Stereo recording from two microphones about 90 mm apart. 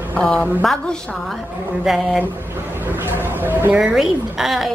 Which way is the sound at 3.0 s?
25° right (ahead or behind).